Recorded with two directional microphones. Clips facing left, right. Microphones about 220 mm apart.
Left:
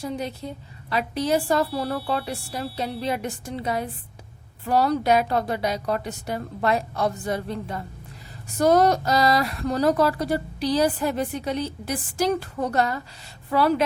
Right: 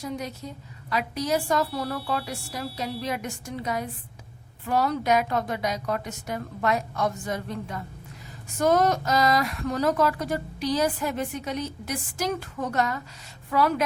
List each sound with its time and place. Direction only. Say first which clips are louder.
0.0 s speech: left 3 dB; 30° left (ahead or behind)